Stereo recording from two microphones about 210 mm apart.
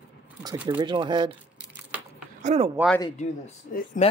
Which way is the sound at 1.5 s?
5° right (ahead or behind).